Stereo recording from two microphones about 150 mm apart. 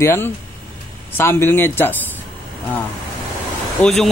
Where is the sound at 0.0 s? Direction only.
15° left (ahead or behind).